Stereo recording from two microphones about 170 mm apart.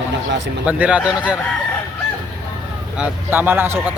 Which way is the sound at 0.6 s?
10° right (ahead or behind).